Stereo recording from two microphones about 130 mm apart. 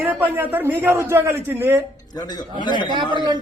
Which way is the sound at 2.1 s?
30° left (ahead or behind).